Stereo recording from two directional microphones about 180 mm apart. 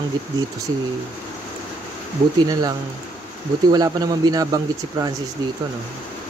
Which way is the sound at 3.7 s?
20° right (ahead or behind).